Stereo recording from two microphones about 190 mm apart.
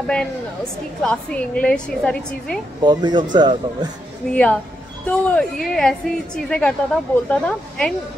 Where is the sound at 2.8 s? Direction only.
20° right (ahead or behind).